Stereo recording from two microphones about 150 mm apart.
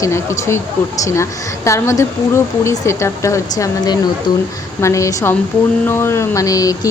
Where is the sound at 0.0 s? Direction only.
20° left (ahead or behind).